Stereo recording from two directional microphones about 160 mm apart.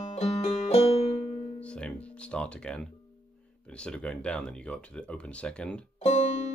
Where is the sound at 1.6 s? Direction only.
5° left (ahead or behind).